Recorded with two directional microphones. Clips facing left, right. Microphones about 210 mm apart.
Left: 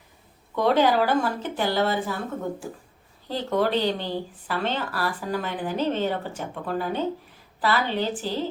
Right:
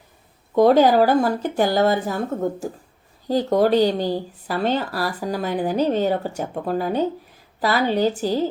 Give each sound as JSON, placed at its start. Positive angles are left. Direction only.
{"t": 0.5, "sound": "speech", "side_deg": -40}